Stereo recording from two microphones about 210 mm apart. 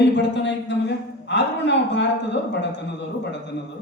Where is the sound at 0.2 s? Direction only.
55° left (ahead or behind).